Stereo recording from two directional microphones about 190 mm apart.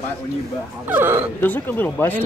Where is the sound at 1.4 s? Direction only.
10° left (ahead or behind).